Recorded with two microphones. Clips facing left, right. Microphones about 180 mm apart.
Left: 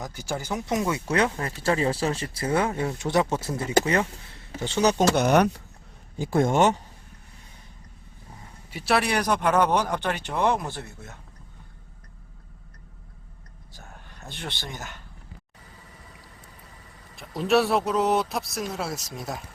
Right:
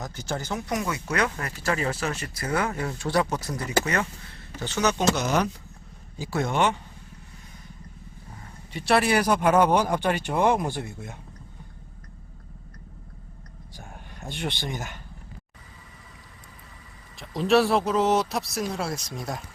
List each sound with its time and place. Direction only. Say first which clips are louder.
0.0 s speech: even; 10° left (ahead or behind)
0.7 s speech: left 4 dB; 25° left (ahead or behind)
5.1 s speech: left 5 dB; 60° left (ahead or behind); by 6.7 s 45° left (ahead or behind)
8.7 s speech: right 2 dB; centre (ahead or behind); by 11.2 s 15° right (ahead or behind)
13.7 s speech: right 3 dB; 15° right (ahead or behind)
17.2 s a man's voice: right 1 dB; centre (ahead or behind)